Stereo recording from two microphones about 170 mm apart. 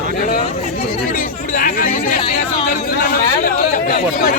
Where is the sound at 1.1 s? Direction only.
55° left (ahead or behind).